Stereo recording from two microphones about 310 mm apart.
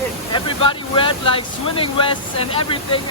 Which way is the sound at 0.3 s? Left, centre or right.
Centre.